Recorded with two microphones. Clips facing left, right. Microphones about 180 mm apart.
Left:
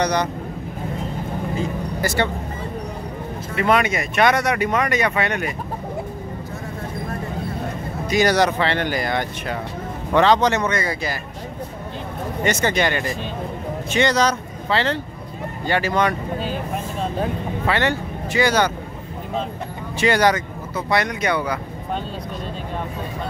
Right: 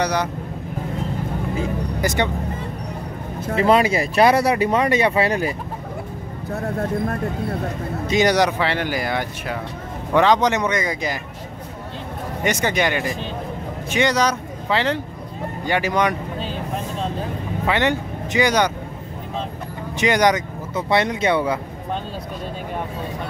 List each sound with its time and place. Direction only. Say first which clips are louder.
0.0 s speech: left 1 dB; 5° right (ahead or behind)
2.0 s speech: even; 15° right (ahead or behind)
3.5 s speech: right 3 dB; 30° right (ahead or behind)
6.5 s speech: right 12 dB; 65° right (ahead or behind)
8.1 s speech: even; 20° right (ahead or behind)
12.4 s speech: even; 10° right (ahead or behind)
17.6 s speech: right 1 dB; 15° right (ahead or behind)
20.0 s speech: even; 15° right (ahead or behind)